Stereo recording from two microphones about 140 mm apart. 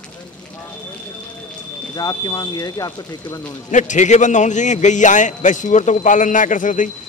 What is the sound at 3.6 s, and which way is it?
A man's voice, 60° left (ahead or behind).